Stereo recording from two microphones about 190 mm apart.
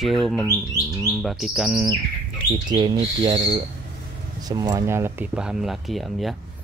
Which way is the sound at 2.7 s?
25° right (ahead or behind).